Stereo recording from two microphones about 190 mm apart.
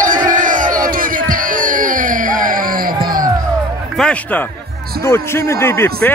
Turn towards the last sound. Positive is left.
turn(degrees=15)  # may be behind; listen again after turning